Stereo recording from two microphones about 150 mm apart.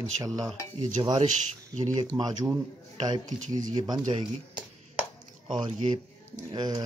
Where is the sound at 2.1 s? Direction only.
25° right (ahead or behind).